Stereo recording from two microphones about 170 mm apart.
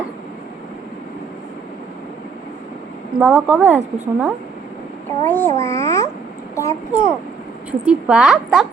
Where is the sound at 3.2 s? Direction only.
5° right (ahead or behind).